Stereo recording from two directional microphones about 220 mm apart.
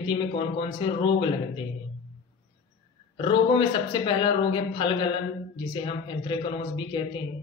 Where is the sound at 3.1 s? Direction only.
25° left (ahead or behind).